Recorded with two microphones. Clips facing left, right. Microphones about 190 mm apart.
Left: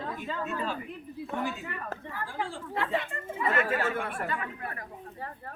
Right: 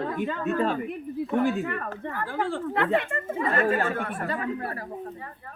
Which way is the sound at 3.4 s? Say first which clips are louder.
Right 3 dB; 45° right (ahead or behind).